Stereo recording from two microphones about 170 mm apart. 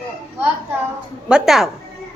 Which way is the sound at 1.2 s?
5° right (ahead or behind).